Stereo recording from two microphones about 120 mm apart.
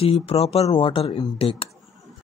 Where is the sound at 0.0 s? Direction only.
50° left (ahead or behind).